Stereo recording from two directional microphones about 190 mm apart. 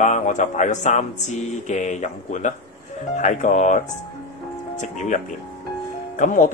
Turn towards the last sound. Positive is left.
turn(degrees=45)  # may be behind; listen again after turning